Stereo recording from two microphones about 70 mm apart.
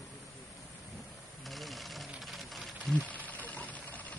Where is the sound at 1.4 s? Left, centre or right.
Centre.